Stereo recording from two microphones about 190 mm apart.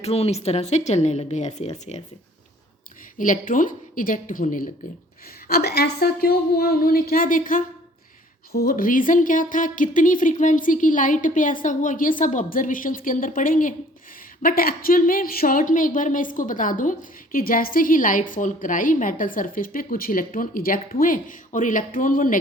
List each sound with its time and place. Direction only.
0.0 s speech: 35° left (ahead or behind)
3.2 s a woman's voice: 45° left (ahead or behind)